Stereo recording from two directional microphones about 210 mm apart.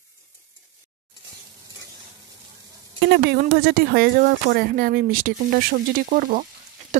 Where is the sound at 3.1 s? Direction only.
50° right (ahead or behind).